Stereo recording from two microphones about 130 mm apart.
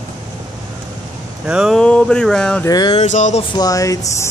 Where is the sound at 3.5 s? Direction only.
30° left (ahead or behind).